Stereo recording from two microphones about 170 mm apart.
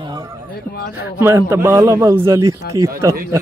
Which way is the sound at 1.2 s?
15° right (ahead or behind).